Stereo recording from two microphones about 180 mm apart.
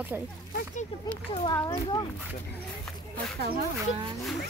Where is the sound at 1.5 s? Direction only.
20° left (ahead or behind).